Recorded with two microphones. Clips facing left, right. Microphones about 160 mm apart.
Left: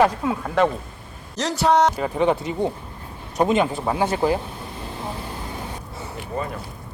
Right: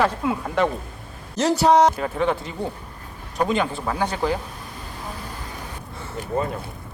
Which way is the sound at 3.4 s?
25° left (ahead or behind).